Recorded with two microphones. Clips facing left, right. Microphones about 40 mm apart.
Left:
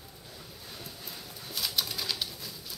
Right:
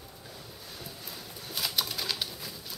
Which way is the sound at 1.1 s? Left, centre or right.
Centre.